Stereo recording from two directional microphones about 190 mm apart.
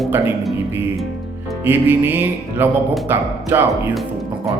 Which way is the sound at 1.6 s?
10° right (ahead or behind).